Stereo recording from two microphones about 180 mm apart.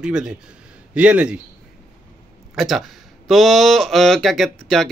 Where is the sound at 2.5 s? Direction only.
Centre (ahead or behind).